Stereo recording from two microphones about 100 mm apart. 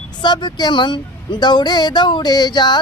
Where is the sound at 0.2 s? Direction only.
50° left (ahead or behind).